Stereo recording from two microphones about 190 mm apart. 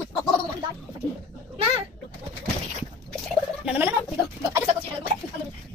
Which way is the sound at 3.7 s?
10° right (ahead or behind).